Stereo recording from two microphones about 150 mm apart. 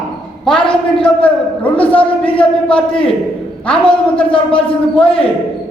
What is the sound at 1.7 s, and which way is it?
Speech, 10° left (ahead or behind).